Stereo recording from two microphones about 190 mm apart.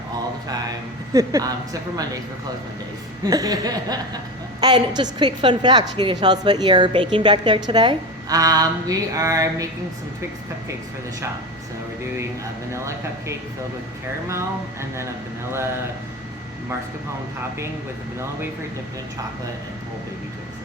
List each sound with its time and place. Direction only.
1.1 s a woman's voice: 20° right (ahead or behind)
3.2 s a woman's voice: 20° right (ahead or behind)
12.7 s speech: 15° right (ahead or behind)